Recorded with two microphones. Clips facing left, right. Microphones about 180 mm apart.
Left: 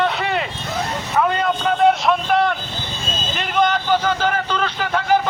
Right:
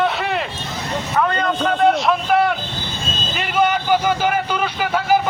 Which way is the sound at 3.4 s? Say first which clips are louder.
Right 1 dB; 10° right (ahead or behind).